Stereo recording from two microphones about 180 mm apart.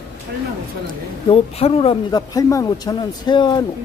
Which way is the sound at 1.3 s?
35° left (ahead or behind).